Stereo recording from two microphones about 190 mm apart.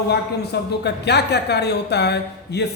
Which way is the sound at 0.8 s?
60° left (ahead or behind).